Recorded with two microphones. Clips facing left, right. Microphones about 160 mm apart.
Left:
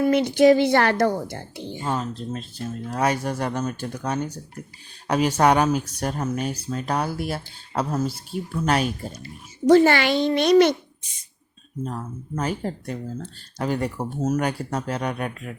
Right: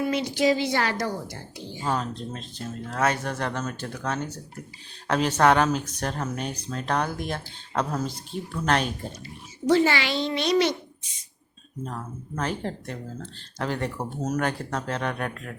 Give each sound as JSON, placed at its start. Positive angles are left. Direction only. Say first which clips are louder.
{"t": 0.0, "sound": "speech", "louder": "left 7 dB", "side_deg": 55}
{"t": 1.8, "sound": "speech", "louder": "even", "side_deg": 5}
{"t": 9.6, "sound": "a child's voice", "louder": "left 6 dB", "side_deg": 50}
{"t": 11.9, "sound": "speech", "louder": "left 2 dB", "side_deg": 10}